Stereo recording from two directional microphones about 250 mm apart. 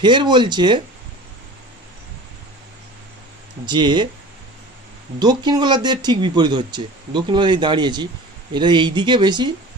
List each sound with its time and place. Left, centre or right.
0.0 s speech: centre
3.6 s speech: centre
5.2 s speech: centre